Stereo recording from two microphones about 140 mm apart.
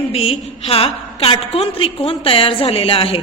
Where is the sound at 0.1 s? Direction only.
45° left (ahead or behind).